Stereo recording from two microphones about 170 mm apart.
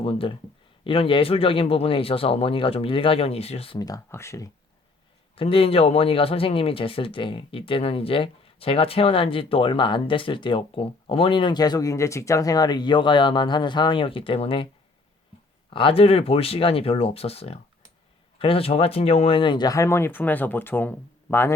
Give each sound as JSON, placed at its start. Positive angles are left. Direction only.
{"t": 0.0, "sound": "speech", "side_deg": 30}
{"t": 3.8, "sound": "speech", "side_deg": 20}
{"t": 5.3, "sound": "speech", "side_deg": 35}
{"t": 15.7, "sound": "speech", "side_deg": 30}